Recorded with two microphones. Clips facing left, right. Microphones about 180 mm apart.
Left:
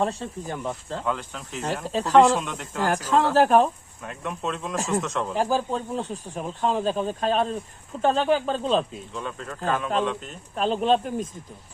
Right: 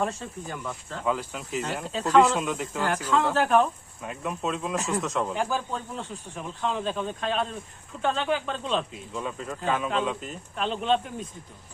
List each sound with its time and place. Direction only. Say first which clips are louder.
0.0 s speech: left 3 dB; 35° left (ahead or behind)
1.0 s speech: right 3 dB; 5° right (ahead or behind)
1.6 s speech: left 7 dB; 40° left (ahead or behind)
2.4 s speech: right 4 dB; 5° right (ahead or behind)
2.8 s speech: left 3 dB; 40° left (ahead or behind)
4.0 s speech: even; 5° right (ahead or behind)
5.4 s speech: left 5 dB; 35° left (ahead or behind)
9.1 s speech: right 1 dB; 5° right (ahead or behind)
10.5 s speech: left 4 dB; 40° left (ahead or behind)